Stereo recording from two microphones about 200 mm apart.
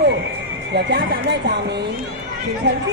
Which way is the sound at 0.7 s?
55° right (ahead or behind).